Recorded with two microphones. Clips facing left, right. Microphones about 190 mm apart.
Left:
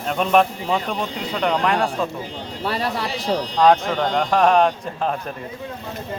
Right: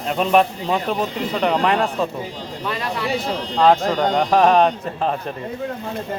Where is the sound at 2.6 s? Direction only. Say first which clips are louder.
Left 1 dB; 40° left (ahead or behind).